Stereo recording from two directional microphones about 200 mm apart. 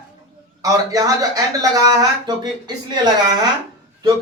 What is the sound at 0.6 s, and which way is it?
Speech, 15° right (ahead or behind).